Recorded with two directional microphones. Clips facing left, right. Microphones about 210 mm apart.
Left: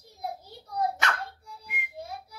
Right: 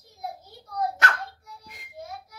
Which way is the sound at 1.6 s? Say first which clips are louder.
Left 6 dB; 35° right (ahead or behind).